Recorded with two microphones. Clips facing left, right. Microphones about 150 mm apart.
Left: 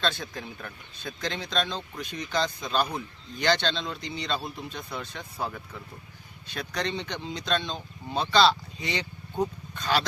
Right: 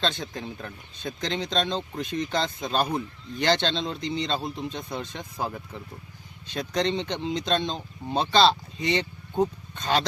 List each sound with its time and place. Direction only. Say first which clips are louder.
0.0 s speech: right 1 dB; 20° right (ahead or behind)